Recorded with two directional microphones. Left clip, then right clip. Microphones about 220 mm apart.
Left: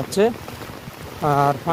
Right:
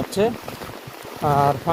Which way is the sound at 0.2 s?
30° left (ahead or behind).